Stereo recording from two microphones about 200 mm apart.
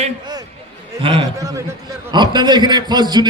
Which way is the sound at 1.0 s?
20° right (ahead or behind).